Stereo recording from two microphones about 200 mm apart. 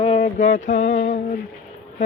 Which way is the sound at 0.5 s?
40° left (ahead or behind).